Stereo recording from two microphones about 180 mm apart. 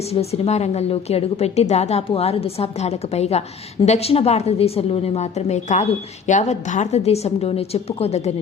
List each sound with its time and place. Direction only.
0.1 s a woman's voice: 35° left (ahead or behind)